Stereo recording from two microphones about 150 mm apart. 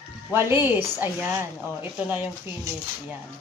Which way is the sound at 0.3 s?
15° right (ahead or behind).